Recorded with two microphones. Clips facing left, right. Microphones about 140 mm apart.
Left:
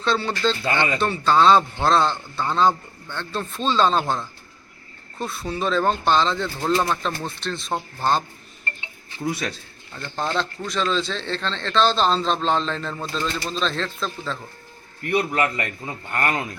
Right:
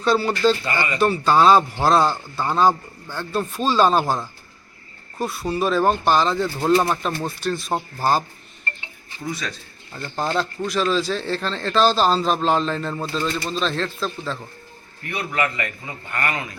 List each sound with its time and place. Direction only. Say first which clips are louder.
0.0 s a man's voice: right 4 dB; 10° right (ahead or behind)
9.9 s a man's voice: right 2 dB; 10° right (ahead or behind)
15.3 s a man's voice: left 1 dB; 40° left (ahead or behind)